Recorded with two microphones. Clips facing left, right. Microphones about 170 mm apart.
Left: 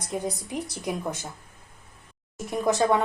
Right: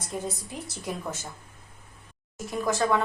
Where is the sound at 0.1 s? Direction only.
15° left (ahead or behind).